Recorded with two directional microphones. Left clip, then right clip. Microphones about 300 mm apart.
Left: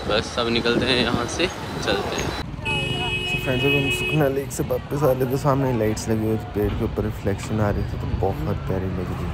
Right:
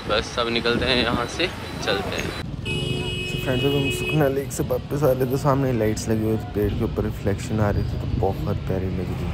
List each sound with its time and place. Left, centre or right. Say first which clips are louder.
0.1 s speech: even; centre
3.3 s speech: left 1 dB; centre